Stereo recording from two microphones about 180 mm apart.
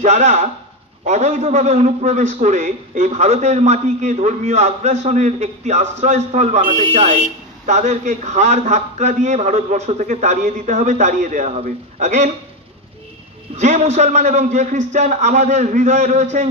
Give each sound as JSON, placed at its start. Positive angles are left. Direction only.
{"t": 0.0, "sound": "a man's voice", "side_deg": -40}
{"t": 13.6, "sound": "a man's voice", "side_deg": -40}